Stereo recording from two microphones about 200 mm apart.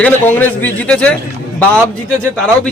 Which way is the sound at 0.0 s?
10° left (ahead or behind).